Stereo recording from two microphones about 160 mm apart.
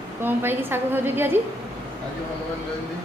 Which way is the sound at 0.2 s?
15° right (ahead or behind).